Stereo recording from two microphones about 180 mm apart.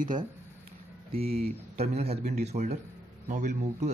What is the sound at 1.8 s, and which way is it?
A man's voice, 35° right (ahead or behind).